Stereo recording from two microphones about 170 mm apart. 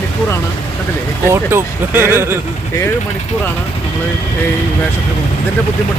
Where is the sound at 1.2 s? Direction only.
15° right (ahead or behind).